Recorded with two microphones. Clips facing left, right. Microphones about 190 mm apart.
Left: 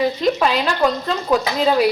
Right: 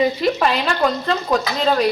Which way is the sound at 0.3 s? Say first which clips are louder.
Left 1 dB; centre (ahead or behind).